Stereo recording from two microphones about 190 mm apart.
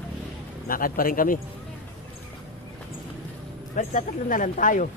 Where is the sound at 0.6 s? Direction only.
50° left (ahead or behind).